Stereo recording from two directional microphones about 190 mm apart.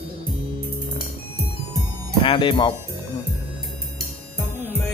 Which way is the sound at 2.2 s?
25° left (ahead or behind).